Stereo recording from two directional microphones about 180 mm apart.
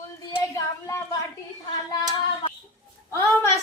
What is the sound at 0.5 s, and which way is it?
Child singing, 15° left (ahead or behind).